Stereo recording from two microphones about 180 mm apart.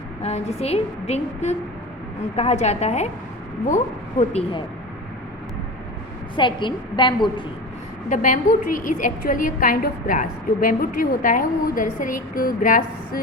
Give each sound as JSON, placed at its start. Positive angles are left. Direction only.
{"t": 0.2, "sound": "a woman's voice", "side_deg": 35}
{"t": 4.2, "sound": "a woman's voice", "side_deg": 35}
{"t": 6.3, "sound": "a woman's voice", "side_deg": 25}
{"t": 8.1, "sound": "a woman's voice", "side_deg": 45}